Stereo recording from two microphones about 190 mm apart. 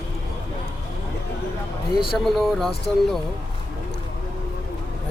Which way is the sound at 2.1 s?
Centre (ahead or behind).